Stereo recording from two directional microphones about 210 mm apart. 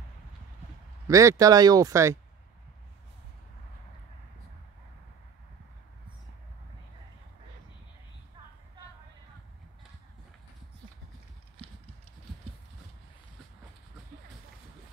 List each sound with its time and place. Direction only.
1.0 s speech: 15° right (ahead or behind)